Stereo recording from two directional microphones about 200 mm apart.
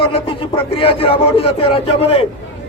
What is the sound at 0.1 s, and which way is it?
Speech, 25° left (ahead or behind).